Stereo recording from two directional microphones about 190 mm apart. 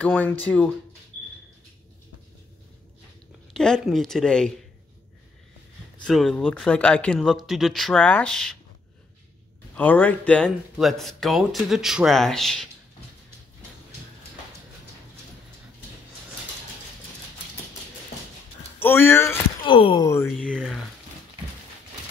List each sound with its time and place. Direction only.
0.0 s speech: 5° left (ahead or behind)
3.5 s speech: 5° left (ahead or behind)
6.0 s speech: 5° left (ahead or behind)
9.8 s speech: 10° left (ahead or behind)
18.8 s speech: 10° left (ahead or behind)
19.6 s speech: 25° left (ahead or behind)
20.2 s speech: 5° left (ahead or behind)